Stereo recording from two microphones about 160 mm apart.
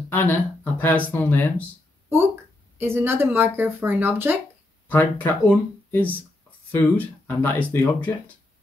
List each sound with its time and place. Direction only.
0.1 s speech: 15° left (ahead or behind)
2.8 s speech: 15° right (ahead or behind)
4.8 s speech: 10° left (ahead or behind)